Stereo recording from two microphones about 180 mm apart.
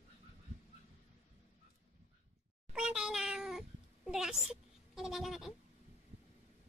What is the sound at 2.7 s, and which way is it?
Cat, 5° right (ahead or behind).